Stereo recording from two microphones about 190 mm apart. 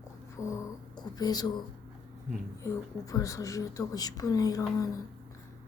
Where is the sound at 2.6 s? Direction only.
15° left (ahead or behind).